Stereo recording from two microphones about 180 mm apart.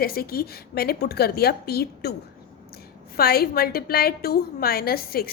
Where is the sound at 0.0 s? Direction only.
55° left (ahead or behind).